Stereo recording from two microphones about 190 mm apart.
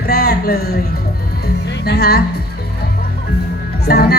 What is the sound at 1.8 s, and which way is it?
Speech, 55° left (ahead or behind).